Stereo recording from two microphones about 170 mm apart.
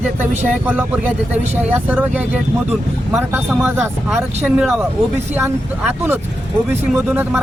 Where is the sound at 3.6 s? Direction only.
15° right (ahead or behind).